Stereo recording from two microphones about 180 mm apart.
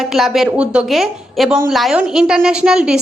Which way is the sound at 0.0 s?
Centre (ahead or behind).